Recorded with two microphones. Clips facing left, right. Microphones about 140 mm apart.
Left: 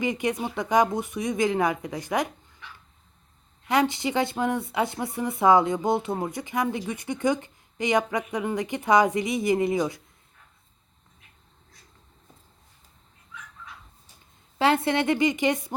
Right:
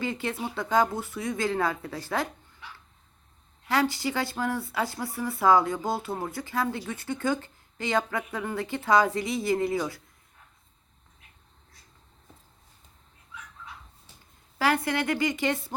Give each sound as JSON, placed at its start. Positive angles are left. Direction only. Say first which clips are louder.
{"t": 0.0, "sound": "speech", "louder": "left 4 dB", "side_deg": 15}
{"t": 3.7, "sound": "speech", "louder": "left 3 dB", "side_deg": 20}
{"t": 14.6, "sound": "speech", "louder": "left 4 dB", "side_deg": 25}